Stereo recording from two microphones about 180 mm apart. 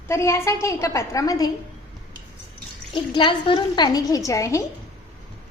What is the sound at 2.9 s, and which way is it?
A woman's voice, 25° left (ahead or behind).